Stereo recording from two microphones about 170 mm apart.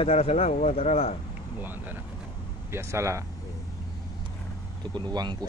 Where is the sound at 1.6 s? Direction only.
10° right (ahead or behind).